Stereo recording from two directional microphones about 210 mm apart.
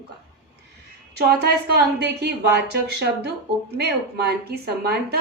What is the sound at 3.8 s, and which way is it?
A woman's voice, 50° right (ahead or behind).